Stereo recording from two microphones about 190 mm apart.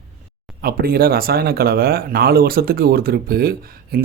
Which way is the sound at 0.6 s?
50° right (ahead or behind).